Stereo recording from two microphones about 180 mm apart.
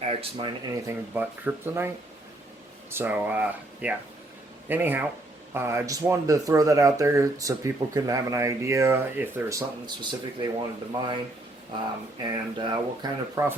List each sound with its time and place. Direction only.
0.1 s speech: 30° right (ahead or behind); by 1.9 s 15° right (ahead or behind)
2.9 s speech: 10° right (ahead or behind)
12.2 s speech: 25° right (ahead or behind)